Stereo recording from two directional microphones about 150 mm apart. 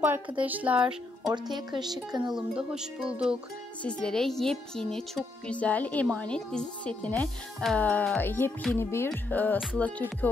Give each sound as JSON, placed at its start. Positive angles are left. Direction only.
{"t": 0.0, "sound": "speech", "side_deg": -10}
{"t": 1.3, "sound": "speech", "side_deg": -30}
{"t": 2.3, "sound": "speech", "side_deg": -5}
{"t": 3.8, "sound": "speech", "side_deg": 5}